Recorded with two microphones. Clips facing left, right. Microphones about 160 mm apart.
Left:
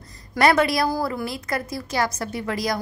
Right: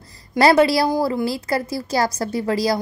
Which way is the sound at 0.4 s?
30° right (ahead or behind).